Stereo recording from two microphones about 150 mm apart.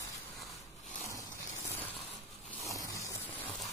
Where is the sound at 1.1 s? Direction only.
15° left (ahead or behind).